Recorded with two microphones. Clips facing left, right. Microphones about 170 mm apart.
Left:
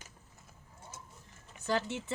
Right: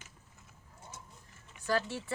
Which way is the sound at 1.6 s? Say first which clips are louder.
Even; 20° left (ahead or behind).